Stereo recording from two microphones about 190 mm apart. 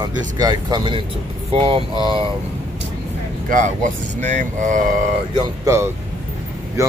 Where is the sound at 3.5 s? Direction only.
45° right (ahead or behind).